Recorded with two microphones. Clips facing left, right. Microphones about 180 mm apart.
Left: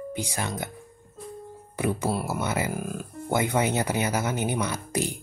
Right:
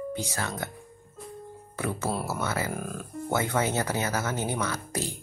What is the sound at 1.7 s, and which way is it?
Speech, 15° left (ahead or behind).